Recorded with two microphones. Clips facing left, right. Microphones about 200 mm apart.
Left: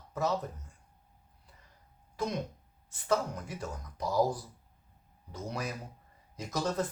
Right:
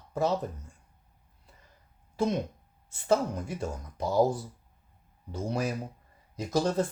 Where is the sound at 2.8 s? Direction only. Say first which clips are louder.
Right 4 dB; 25° right (ahead or behind).